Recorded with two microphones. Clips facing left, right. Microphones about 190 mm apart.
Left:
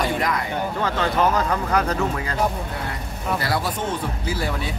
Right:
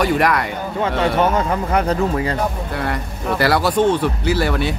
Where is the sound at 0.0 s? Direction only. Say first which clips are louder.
Right 6 dB; 70° right (ahead or behind).